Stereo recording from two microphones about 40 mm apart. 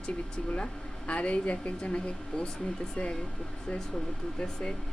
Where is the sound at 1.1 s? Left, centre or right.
Left.